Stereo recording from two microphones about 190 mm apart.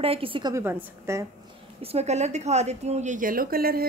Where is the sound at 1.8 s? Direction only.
35° right (ahead or behind).